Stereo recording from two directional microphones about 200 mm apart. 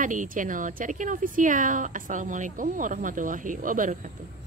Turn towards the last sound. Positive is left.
turn(degrees=-40)  # may be behind; listen again after turning